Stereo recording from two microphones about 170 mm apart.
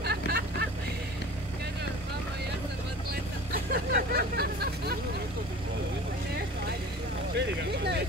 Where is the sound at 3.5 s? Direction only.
60° right (ahead or behind).